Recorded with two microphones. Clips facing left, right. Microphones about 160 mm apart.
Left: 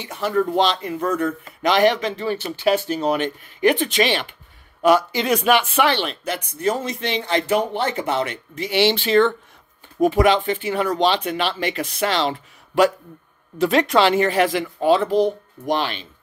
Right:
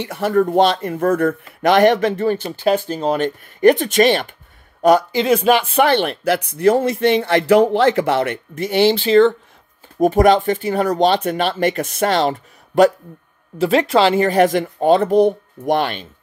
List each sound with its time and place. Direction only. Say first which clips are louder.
0.0 s speech: right 4 dB; 60° right (ahead or behind)
5.1 s speech: right 4 dB; 30° right (ahead or behind)
5.9 s speech: right 5 dB; 50° right (ahead or behind)
6.2 s speech: right 9 dB; 70° right (ahead or behind); by 8.9 s 45° right (ahead or behind)
8.9 s speech: right 6 dB; 30° right (ahead or behind)
9.9 s speech: right 4 dB; 45° right (ahead or behind)
13.6 s speech: right 2 dB; 30° right (ahead or behind); by 15.1 s 45° right (ahead or behind)
15.1 s a child's voice: right 5 dB; 60° right (ahead or behind)